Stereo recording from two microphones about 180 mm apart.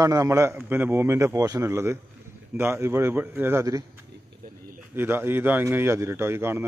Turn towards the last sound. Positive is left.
turn(degrees=-15)  # may be behind; listen again after turning